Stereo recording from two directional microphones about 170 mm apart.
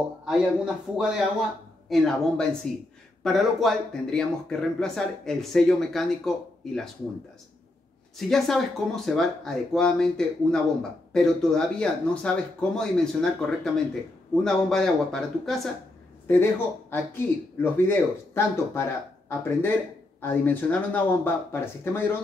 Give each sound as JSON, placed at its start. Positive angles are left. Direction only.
{"t": 0.2, "sound": "speech", "side_deg": -5}
{"t": 8.3, "sound": "speech", "side_deg": 0}
{"t": 14.3, "sound": "speech", "side_deg": 0}
{"t": 16.3, "sound": "speech", "side_deg": 15}